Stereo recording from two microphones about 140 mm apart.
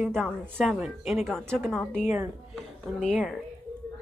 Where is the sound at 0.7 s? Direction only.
5° right (ahead or behind).